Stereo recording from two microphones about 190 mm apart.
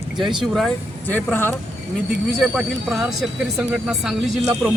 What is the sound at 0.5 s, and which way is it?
Speech, 5° left (ahead or behind).